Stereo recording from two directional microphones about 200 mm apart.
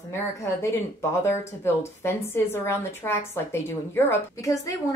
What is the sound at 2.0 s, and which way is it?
A woman's voice, 10° left (ahead or behind).